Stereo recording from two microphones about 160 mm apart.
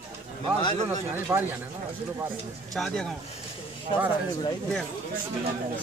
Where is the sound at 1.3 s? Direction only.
20° right (ahead or behind).